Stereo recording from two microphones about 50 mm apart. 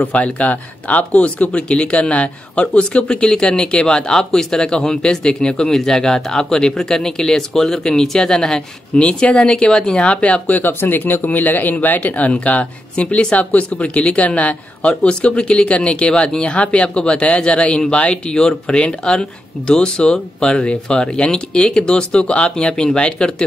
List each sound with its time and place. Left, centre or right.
0.0 s speech: left
10.2 s speech: left